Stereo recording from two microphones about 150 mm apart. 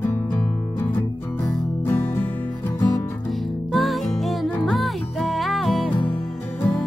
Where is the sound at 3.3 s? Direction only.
Centre (ahead or behind).